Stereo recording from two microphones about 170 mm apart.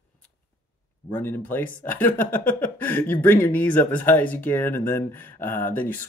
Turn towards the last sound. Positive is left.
turn(degrees=10)  # may be behind; listen again after turning